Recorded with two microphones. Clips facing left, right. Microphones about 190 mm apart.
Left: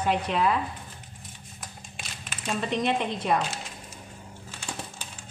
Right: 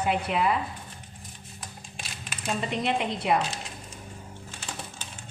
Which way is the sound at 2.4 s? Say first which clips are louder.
Left 1 dB; 15° right (ahead or behind).